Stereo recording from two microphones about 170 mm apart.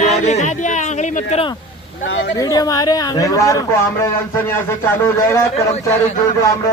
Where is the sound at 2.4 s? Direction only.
20° left (ahead or behind).